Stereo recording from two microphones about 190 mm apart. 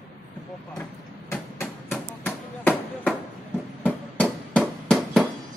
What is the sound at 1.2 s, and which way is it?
Chop, 10° left (ahead or behind).